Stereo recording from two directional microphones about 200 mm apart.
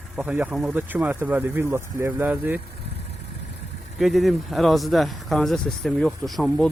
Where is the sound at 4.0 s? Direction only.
Centre (ahead or behind).